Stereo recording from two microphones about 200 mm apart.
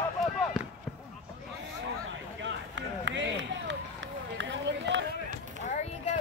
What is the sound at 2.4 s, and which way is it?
Run, 65° right (ahead or behind).